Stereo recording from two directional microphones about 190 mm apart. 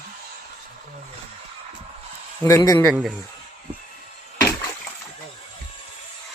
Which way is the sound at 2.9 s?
5° right (ahead or behind).